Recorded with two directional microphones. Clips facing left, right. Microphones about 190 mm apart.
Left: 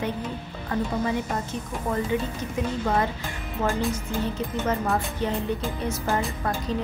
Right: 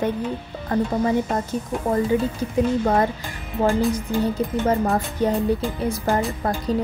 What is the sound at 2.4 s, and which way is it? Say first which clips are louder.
Speech: right 7 dB; 40° right (ahead or behind).